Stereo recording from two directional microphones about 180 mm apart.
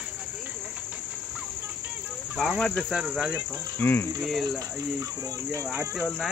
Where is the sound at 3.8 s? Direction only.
10° left (ahead or behind).